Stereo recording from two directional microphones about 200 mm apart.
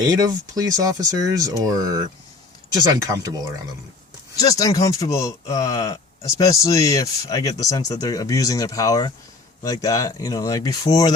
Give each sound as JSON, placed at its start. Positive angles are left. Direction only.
{"t": 0.0, "sound": "speech", "side_deg": -20}
{"t": 4.4, "sound": "speech", "side_deg": 20}